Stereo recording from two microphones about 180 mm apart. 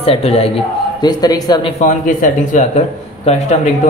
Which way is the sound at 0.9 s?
20° left (ahead or behind).